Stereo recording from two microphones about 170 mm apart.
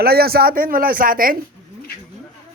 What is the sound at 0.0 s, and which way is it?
Speech, 65° right (ahead or behind).